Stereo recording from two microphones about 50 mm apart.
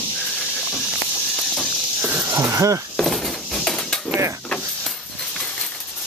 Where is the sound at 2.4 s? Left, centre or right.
Right.